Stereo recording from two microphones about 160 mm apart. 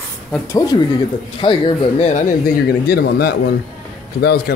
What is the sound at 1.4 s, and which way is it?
Speech, 35° left (ahead or behind).